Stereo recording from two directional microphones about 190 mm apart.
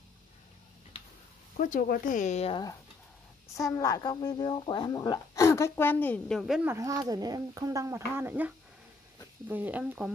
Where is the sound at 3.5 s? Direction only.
15° left (ahead or behind); by 6.7 s centre (ahead or behind).